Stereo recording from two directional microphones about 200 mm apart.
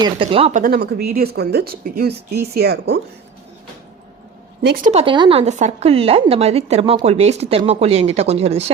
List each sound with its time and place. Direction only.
0.0 s speech: 25° right (ahead or behind)
0.6 s speech: 50° right (ahead or behind)
4.6 s speech: 50° right (ahead or behind)
4.9 s a woman's voice: 30° right (ahead or behind)